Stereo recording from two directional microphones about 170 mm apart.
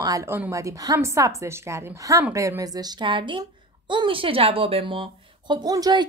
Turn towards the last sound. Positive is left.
turn(degrees=-20)  # may be behind; listen again after turning